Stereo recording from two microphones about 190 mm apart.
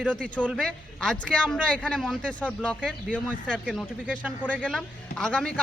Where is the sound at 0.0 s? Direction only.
5° left (ahead or behind).